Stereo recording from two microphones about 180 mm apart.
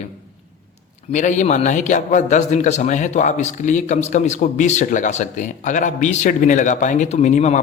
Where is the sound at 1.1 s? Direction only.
40° left (ahead or behind).